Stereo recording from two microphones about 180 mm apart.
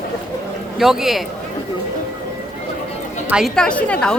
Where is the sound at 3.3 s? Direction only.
5° right (ahead or behind).